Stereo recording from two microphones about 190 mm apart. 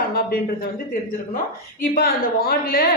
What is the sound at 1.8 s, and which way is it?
A woman's voice, 50° left (ahead or behind).